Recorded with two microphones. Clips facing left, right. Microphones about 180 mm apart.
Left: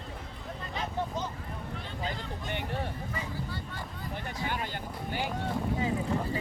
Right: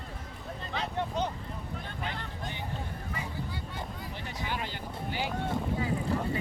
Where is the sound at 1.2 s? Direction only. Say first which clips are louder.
Right 4 dB; 65° right (ahead or behind).